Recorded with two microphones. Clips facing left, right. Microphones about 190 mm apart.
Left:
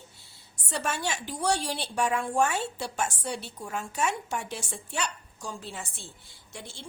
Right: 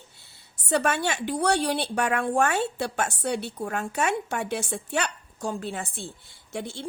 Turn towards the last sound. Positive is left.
turn(degrees=-60)  # may be behind; listen again after turning